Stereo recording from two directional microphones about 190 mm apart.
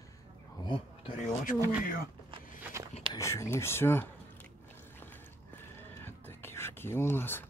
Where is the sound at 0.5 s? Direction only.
25° left (ahead or behind).